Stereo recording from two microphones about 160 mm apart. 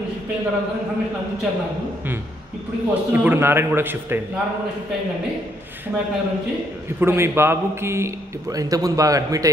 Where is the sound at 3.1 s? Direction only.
15° right (ahead or behind).